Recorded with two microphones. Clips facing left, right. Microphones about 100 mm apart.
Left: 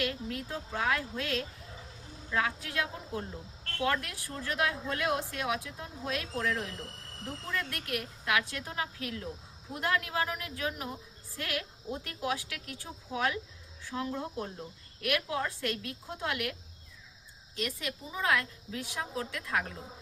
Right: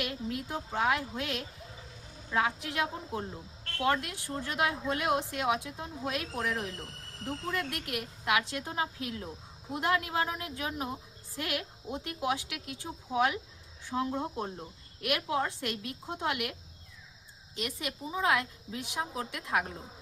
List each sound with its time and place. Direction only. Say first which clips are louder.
0.0 s a woman's voice: left 1 dB; 20° right (ahead or behind)